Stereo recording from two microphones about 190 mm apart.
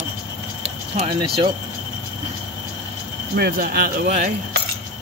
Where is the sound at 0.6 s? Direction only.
30° right (ahead or behind).